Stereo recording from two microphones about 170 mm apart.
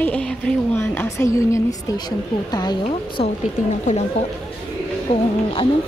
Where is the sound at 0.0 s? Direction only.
5° left (ahead or behind); by 3.3 s 25° left (ahead or behind).